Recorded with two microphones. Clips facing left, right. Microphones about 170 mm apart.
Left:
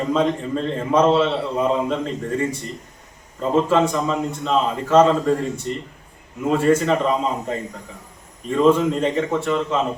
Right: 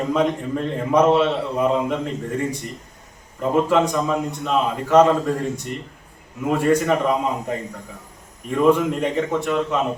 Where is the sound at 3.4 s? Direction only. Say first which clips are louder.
Even; 15° right (ahead or behind).